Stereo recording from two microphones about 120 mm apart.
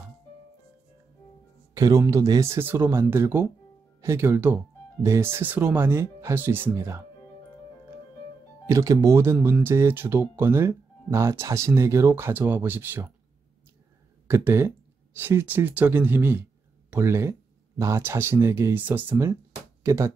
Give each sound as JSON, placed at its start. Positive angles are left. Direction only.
{"t": 1.7, "sound": "speech", "side_deg": -30}
{"t": 8.6, "sound": "speech", "side_deg": -25}
{"t": 14.2, "sound": "speech", "side_deg": -20}